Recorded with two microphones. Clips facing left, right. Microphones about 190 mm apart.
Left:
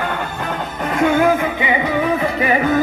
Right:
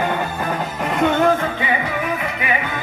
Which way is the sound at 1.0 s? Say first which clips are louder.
Left 2 dB; 5° left (ahead or behind).